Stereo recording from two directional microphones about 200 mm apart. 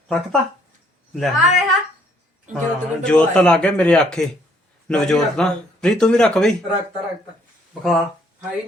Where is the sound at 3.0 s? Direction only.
5° left (ahead or behind).